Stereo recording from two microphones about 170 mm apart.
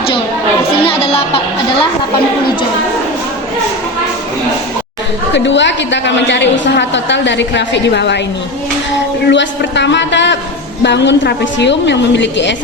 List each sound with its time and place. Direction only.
0.8 s speech: 35° left (ahead or behind)
5.3 s a woman's voice: 90° left
9.2 s a woman's voice: 90° left